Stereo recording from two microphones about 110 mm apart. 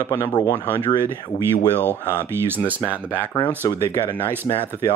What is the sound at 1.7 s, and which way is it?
Speech, 20° right (ahead or behind).